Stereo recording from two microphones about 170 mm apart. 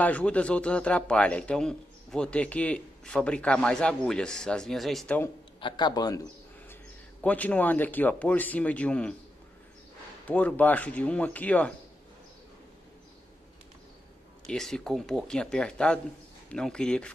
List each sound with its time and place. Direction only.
0.0 s a man's voice: 10° left (ahead or behind)
5.6 s a man's voice: 30° left (ahead or behind)
7.2 s a man's voice: 10° left (ahead or behind)
10.2 s a man's voice: 10° left (ahead or behind)
14.4 s speech: centre (ahead or behind)